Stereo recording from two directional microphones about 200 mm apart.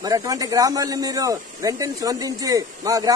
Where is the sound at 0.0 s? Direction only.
15° right (ahead or behind).